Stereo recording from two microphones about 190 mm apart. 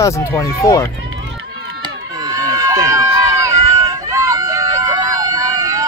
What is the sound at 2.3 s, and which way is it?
Run, 20° right (ahead or behind).